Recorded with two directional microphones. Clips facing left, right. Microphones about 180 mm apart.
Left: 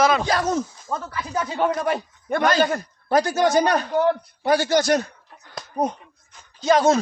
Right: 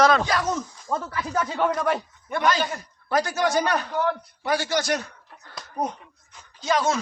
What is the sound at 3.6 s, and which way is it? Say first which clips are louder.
Speech: left 5 dB; 40° left (ahead or behind).